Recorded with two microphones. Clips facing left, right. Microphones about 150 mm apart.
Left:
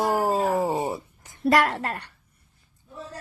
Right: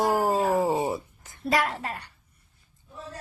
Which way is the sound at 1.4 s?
75° left (ahead or behind).